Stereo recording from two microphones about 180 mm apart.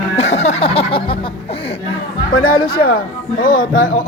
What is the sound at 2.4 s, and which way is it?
Speech, 55° left (ahead or behind).